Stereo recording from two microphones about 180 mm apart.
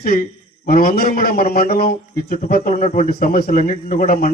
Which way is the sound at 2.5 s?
45° left (ahead or behind).